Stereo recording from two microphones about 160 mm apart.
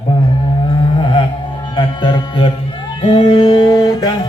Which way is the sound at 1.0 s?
30° left (ahead or behind).